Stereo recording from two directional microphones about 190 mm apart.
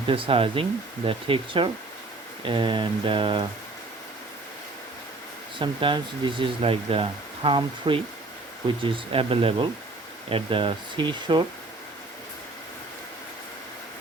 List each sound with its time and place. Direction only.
0.1 s speech: 30° right (ahead or behind)
5.5 s speech: 25° right (ahead or behind)